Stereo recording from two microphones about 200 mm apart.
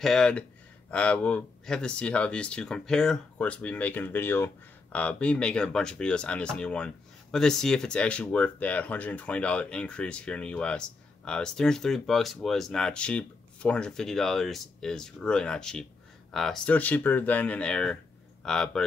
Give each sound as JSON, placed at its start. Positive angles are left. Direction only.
{"t": 0.0, "sound": "speech", "side_deg": 0}